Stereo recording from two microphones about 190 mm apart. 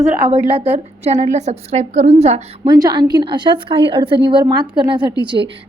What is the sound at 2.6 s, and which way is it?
A woman's voice, 20° right (ahead or behind).